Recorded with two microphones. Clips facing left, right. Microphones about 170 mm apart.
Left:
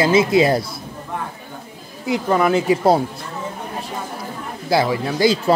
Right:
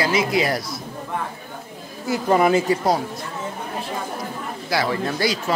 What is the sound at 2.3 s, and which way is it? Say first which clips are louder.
Speech: right 1 dB; 5° right (ahead or behind).